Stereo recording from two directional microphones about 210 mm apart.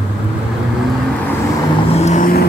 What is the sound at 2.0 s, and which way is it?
Vehicle, 30° left (ahead or behind).